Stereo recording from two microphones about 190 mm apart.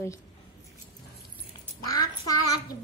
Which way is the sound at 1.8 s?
20° left (ahead or behind).